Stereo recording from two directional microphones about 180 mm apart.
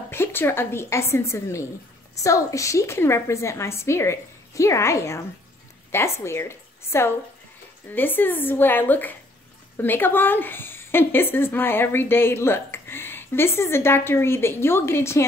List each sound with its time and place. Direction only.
0.1 s a woman's voice: 10° left (ahead or behind)